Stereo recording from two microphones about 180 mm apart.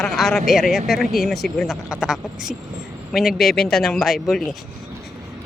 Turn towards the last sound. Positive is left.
turn(degrees=0)  # may be behind; listen again after turning